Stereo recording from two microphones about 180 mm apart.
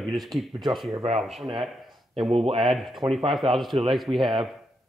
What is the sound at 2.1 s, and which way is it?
Speech, 30° right (ahead or behind).